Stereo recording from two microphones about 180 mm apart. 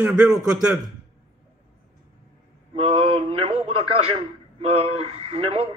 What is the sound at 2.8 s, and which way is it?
A man's voice, 35° right (ahead or behind).